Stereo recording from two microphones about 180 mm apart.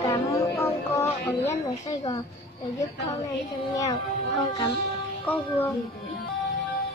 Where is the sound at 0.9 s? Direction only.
15° left (ahead or behind).